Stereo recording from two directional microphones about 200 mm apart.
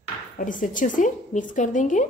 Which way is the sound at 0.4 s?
40° left (ahead or behind).